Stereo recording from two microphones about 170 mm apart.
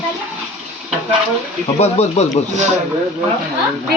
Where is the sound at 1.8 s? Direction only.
40° left (ahead or behind).